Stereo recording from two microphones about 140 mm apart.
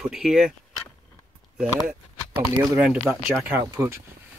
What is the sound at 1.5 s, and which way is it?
Speech, 10° right (ahead or behind).